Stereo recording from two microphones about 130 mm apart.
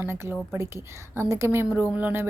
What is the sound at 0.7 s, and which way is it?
A woman's voice, 20° right (ahead or behind).